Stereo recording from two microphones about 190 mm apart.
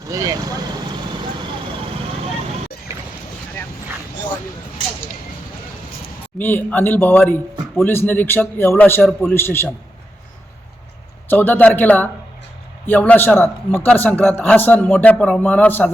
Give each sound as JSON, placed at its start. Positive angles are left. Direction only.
{"t": 0.1, "sound": "speech", "side_deg": -20}
{"t": 6.4, "sound": "a man's voice", "side_deg": 10}
{"t": 11.3, "sound": "a man's voice", "side_deg": 10}